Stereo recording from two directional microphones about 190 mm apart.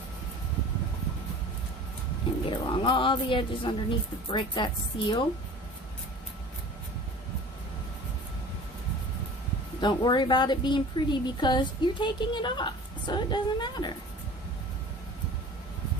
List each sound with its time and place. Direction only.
2.5 s a woman's voice: 25° left (ahead or behind)
9.8 s a woman's voice: 25° left (ahead or behind)